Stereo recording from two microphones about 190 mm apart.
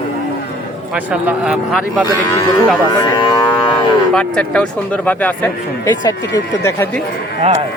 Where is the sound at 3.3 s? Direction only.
25° left (ahead or behind).